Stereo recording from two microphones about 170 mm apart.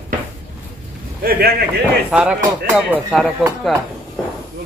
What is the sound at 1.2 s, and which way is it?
Speech, 60° right (ahead or behind).